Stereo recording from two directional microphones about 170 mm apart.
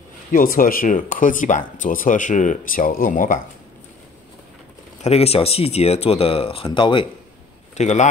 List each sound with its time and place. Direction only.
0.3 s speech: 55° left (ahead or behind)
5.0 s speech: 35° left (ahead or behind)
7.7 s a man's voice: 45° left (ahead or behind)